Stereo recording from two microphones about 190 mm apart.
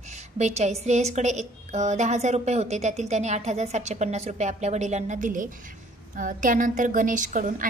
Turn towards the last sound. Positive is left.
turn(degrees=-40)  # may be behind; listen again after turning